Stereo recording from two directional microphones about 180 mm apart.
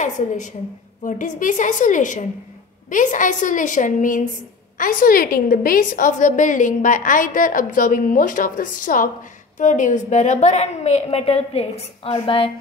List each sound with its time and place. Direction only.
0.0 s a woman's voice: 45° left (ahead or behind)